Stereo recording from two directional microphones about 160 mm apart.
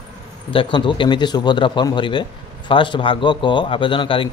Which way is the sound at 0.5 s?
30° left (ahead or behind).